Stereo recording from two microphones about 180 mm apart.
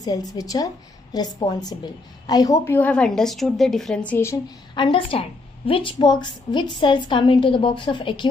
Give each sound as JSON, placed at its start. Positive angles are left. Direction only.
{"t": 0.0, "sound": "a woman's voice", "side_deg": 20}
{"t": 4.7, "sound": "a woman's voice", "side_deg": 25}